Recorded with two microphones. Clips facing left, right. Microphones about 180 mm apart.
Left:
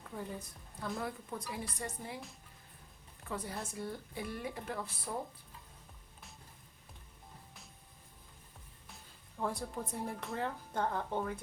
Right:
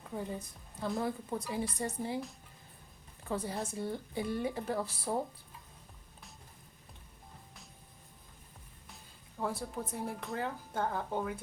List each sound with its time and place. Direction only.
0.2 s a woman's voice: 20° right (ahead or behind)
3.2 s a woman's voice: 30° right (ahead or behind)
9.4 s a woman's voice: 5° right (ahead or behind)